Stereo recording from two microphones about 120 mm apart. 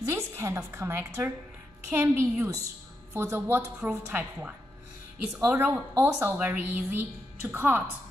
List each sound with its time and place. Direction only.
0.1 s a woman's voice: 25° right (ahead or behind)